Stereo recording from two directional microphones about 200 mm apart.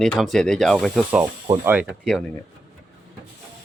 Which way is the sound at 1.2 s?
15° right (ahead or behind).